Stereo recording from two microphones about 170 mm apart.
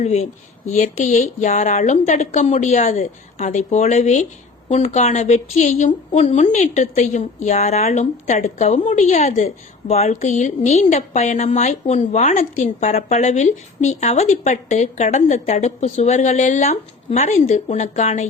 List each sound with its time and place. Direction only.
0.0 s a woman's voice: 45° left (ahead or behind)